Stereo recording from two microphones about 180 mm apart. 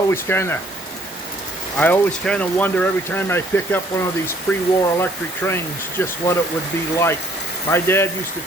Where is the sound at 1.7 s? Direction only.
10° left (ahead or behind).